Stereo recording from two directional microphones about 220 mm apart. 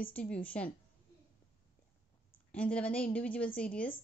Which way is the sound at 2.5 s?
5° left (ahead or behind).